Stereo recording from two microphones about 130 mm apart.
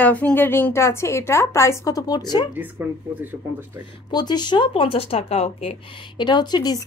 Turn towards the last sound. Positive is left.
turn(degrees=30)  # may be behind; listen again after turning